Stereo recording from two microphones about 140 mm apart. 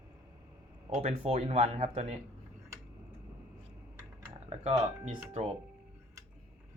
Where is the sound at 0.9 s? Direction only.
55° right (ahead or behind).